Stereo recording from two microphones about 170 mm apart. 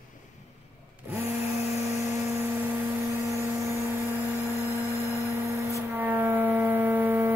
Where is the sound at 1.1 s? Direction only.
10° right (ahead or behind).